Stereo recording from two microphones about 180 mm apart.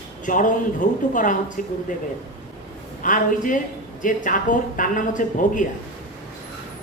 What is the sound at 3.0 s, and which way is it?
Speech, 45° left (ahead or behind).